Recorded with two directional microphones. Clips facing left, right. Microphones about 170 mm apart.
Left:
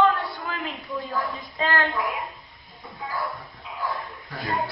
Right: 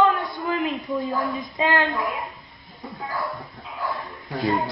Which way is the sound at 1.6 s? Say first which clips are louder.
Right 3 dB; 15° right (ahead or behind).